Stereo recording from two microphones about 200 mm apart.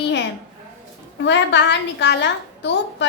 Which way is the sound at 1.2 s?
60° left (ahead or behind).